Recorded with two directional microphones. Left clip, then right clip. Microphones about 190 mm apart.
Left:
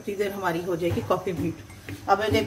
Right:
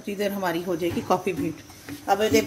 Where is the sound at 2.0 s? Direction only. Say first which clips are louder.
Right 1 dB; 45° right (ahead or behind).